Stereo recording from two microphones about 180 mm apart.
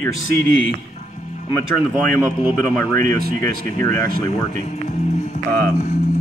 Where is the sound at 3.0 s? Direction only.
55° right (ahead or behind).